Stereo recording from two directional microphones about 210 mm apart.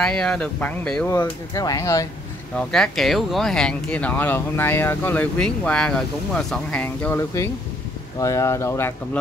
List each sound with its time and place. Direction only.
0.0 s speech: 5° left (ahead or behind)
1.1 s speech: 15° left (ahead or behind)
2.5 s speech: centre (ahead or behind)